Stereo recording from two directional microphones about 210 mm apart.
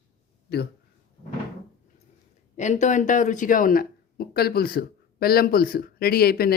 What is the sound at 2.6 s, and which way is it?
Speech, 35° left (ahead or behind).